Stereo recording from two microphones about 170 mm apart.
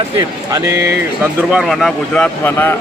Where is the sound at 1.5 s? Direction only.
Centre (ahead or behind).